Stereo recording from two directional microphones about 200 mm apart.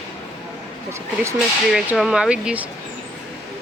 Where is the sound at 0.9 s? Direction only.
15° right (ahead or behind).